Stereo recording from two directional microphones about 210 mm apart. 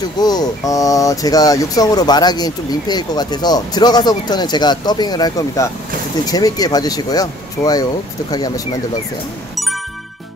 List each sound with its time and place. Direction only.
0.0 s speech: 20° left (ahead or behind)